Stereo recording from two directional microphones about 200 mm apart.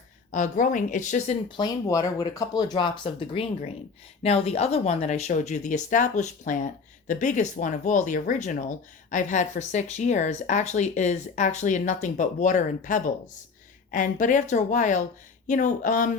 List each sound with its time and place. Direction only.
0.3 s speech: 40° left (ahead or behind)
1.5 s speech: 20° left (ahead or behind); by 16.1 s 40° left (ahead or behind)